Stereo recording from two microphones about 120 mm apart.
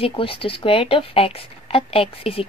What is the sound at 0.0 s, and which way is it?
Speech, 50° left (ahead or behind).